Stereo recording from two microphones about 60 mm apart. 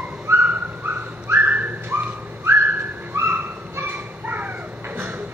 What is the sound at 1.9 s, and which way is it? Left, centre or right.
Whistling, right.